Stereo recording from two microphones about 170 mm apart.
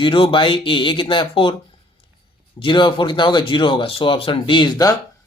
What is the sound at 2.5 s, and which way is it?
Speech, 30° left (ahead or behind).